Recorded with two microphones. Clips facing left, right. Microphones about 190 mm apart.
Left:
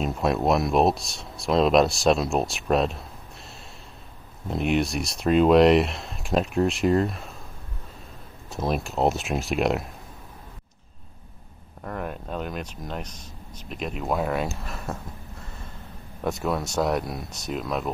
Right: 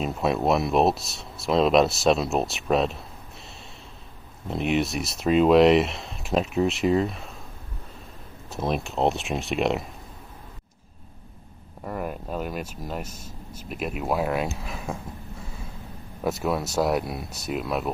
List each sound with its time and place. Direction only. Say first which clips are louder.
0.0 s speech: even; centre (ahead or behind)
4.5 s speech: left 1 dB; centre (ahead or behind)
8.5 s speech: even; centre (ahead or behind)
11.8 s speech: right 1 dB; 5° right (ahead or behind)
15.4 s a sound: right 2 dB; 5° right (ahead or behind)
16.3 s speech: right 1 dB; centre (ahead or behind)